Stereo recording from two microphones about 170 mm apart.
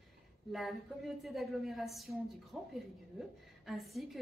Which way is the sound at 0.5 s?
Centre (ahead or behind).